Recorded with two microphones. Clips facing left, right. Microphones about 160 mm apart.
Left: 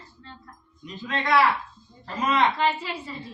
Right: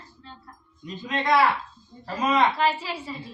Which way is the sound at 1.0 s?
15° right (ahead or behind).